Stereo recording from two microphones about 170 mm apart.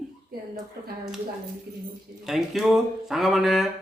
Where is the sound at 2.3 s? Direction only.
Centre (ahead or behind).